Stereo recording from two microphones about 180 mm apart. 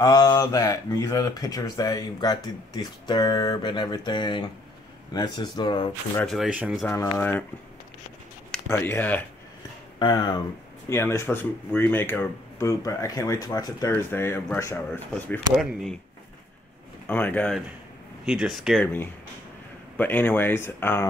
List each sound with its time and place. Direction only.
0.0 s speech: 20° left (ahead or behind)
6.2 s speech: centre (ahead or behind)
6.9 s speech: 10° left (ahead or behind)
8.6 s speech: 15° left (ahead or behind)
9.9 s speech: 25° left (ahead or behind)
15.5 s speech: centre (ahead or behind)
17.1 s speech: 10° left (ahead or behind)
18.2 s speech: centre (ahead or behind)
20.0 s speech: 10° left (ahead or behind)